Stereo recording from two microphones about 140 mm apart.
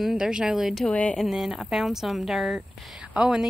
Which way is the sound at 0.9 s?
10° left (ahead or behind).